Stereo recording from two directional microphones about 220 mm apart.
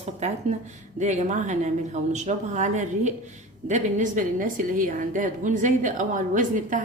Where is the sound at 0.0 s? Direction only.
30° right (ahead or behind).